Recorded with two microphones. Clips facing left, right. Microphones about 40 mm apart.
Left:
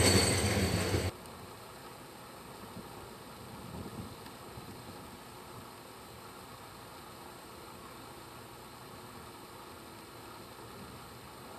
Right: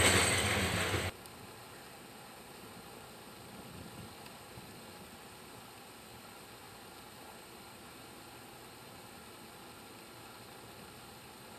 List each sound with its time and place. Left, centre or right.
0.0 s train: right